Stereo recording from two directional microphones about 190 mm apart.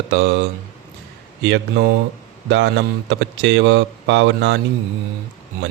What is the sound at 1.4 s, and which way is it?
Speech, 70° right (ahead or behind).